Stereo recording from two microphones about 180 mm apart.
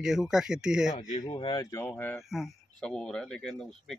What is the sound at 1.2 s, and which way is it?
Speech, 25° left (ahead or behind).